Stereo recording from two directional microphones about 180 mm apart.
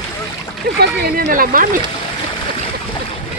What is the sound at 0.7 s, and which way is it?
Speech, 60° right (ahead or behind).